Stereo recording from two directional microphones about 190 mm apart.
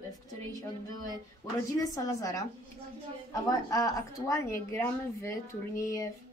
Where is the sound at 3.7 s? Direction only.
20° left (ahead or behind).